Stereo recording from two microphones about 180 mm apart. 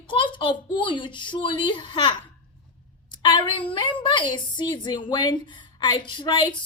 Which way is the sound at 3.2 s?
25° left (ahead or behind).